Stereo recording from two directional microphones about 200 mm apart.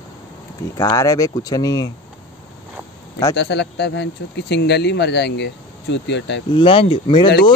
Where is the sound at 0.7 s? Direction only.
15° left (ahead or behind).